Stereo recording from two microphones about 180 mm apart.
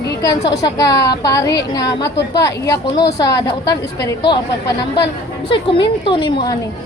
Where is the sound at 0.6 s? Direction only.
20° left (ahead or behind).